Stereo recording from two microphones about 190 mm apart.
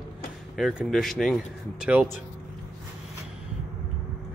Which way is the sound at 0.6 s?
Centre (ahead or behind).